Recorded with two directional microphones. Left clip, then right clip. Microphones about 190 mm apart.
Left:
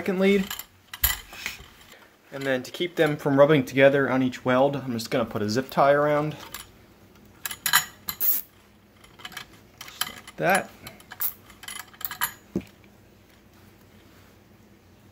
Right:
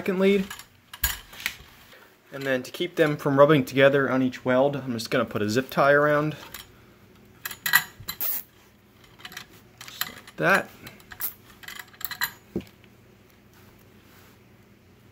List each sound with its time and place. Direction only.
0.0 s speech: 5° right (ahead or behind)
2.3 s speech: 5° right (ahead or behind)
7.6 s mechanisms: 10° right (ahead or behind)
10.1 s cutlery: 15° right (ahead or behind)
11.7 s a sound: 5° right (ahead or behind)